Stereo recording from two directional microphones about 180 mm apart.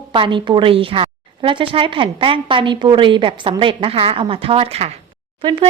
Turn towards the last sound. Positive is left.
turn(degrees=-25)  # may be behind; listen again after turning